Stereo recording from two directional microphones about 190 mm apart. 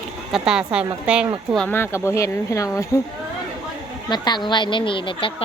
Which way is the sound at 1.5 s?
10° left (ahead or behind).